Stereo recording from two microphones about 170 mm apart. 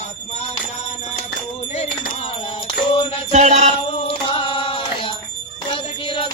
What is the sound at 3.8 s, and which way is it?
Music, 30° left (ahead or behind).